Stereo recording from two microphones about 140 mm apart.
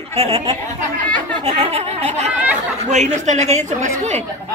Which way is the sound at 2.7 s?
55° right (ahead or behind).